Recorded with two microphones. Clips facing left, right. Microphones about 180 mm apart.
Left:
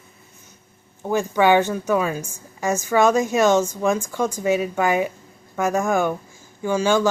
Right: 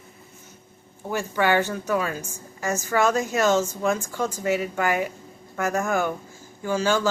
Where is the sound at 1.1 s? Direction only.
20° left (ahead or behind).